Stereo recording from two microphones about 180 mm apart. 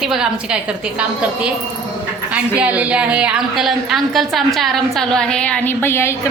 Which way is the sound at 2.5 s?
5° right (ahead or behind).